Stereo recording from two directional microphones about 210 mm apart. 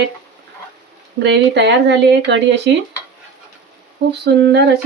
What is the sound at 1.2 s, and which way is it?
Speech, 55° right (ahead or behind).